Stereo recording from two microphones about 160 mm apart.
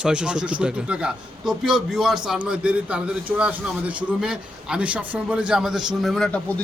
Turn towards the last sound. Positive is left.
turn(degrees=5)  # may be behind; listen again after turning